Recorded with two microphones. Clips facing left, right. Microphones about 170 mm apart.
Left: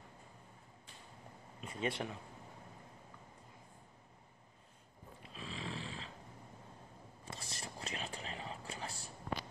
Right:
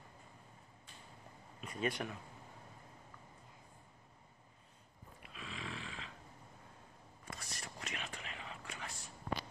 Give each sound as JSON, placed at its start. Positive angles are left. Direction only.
{"t": 1.6, "sound": "speech", "side_deg": 25}
{"t": 5.3, "sound": "snoring", "side_deg": 30}
{"t": 7.2, "sound": "whispering", "side_deg": 30}